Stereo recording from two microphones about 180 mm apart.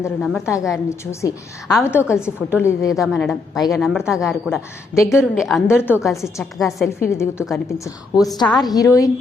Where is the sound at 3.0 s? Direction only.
Centre (ahead or behind).